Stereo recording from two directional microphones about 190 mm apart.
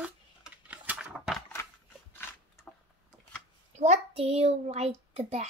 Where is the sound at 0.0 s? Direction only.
5° right (ahead or behind).